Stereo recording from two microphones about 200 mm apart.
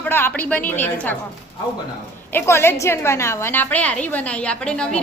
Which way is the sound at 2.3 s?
10° left (ahead or behind).